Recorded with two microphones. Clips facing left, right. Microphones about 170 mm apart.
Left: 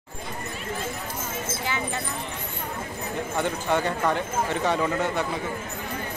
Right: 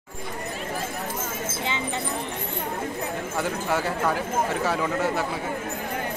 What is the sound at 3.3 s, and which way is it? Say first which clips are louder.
Speech: left 1 dB; 5° right (ahead or behind).